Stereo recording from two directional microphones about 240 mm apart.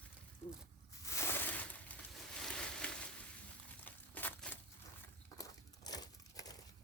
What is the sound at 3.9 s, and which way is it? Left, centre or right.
Crumpling, centre.